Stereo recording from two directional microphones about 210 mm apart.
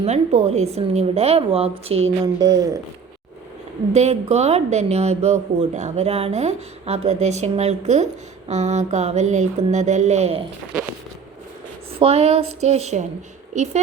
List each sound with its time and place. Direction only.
0.0 s a woman's voice: 30° right (ahead or behind)
3.9 s speech: 30° right (ahead or behind)
11.9 s a woman's voice: 30° right (ahead or behind)